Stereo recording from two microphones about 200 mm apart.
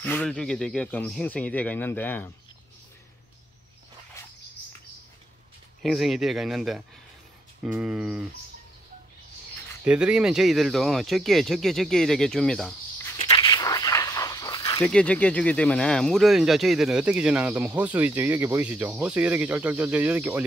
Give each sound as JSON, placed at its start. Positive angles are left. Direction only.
{"t": 0.0, "sound": "speech", "side_deg": 5}
{"t": 5.8, "sound": "speech", "side_deg": 0}
{"t": 9.8, "sound": "speech", "side_deg": -5}
{"t": 13.3, "sound": "snake", "side_deg": 20}
{"t": 14.9, "sound": "speech", "side_deg": 5}